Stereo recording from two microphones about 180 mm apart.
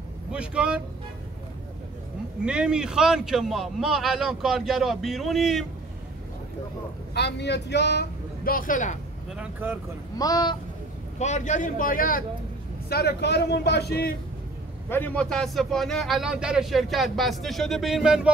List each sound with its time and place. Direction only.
0.3 s a man's voice: 5° right (ahead or behind)
2.4 s a man's voice: 5° right (ahead or behind)
7.2 s speech: 70° left (ahead or behind); by 8.9 s 45° left (ahead or behind)
9.4 s speech: 10° right (ahead or behind)
10.1 s a man's voice: 20° left (ahead or behind)
11.1 s a man's voice: 40° left (ahead or behind)
12.9 s a man's voice: 65° left (ahead or behind)
14.9 s a man's voice: 10° left (ahead or behind)